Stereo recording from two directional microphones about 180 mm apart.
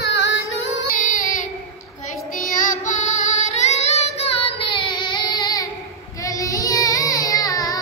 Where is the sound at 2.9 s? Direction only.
40° left (ahead or behind); by 7.8 s 20° left (ahead or behind).